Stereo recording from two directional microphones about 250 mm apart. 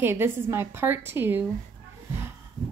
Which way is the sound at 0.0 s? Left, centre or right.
Centre.